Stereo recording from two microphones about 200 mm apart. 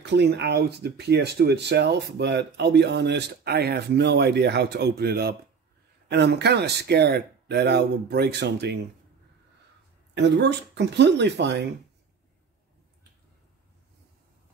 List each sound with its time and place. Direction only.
0.0 s speech: 60° right (ahead or behind)
10.1 s speech: 60° right (ahead or behind)